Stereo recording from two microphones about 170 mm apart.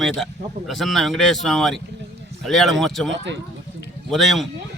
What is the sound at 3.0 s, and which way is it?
Speech, 90° right.